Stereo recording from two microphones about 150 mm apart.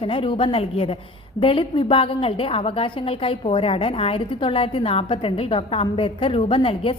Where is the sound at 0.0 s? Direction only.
35° left (ahead or behind).